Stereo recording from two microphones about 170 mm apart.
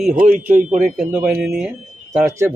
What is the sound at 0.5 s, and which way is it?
Speech, 50° right (ahead or behind).